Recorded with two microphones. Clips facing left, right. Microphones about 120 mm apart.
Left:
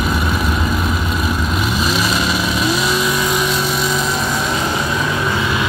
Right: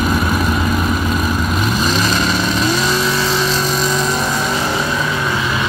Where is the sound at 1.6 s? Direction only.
5° left (ahead or behind).